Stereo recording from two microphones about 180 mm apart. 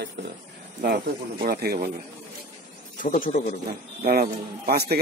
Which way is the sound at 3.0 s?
50° left (ahead or behind).